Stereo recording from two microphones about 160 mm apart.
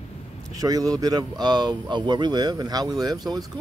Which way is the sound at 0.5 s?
25° right (ahead or behind).